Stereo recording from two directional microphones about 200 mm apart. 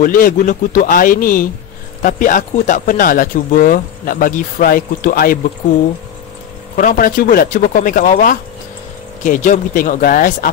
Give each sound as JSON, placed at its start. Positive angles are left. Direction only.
{"t": 0.0, "sound": "speech", "side_deg": 45}
{"t": 6.8, "sound": "speech", "side_deg": 40}